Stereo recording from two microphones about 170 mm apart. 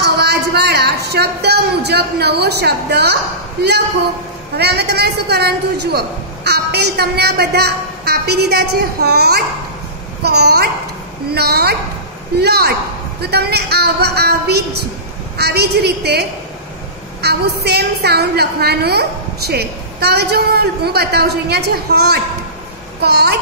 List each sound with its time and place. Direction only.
0.0 s speech: 75° right (ahead or behind)
4.6 s a woman's voice: 70° right (ahead or behind)